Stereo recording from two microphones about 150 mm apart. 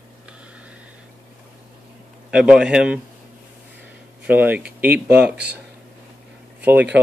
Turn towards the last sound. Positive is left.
turn(degrees=-10)  # may be behind; listen again after turning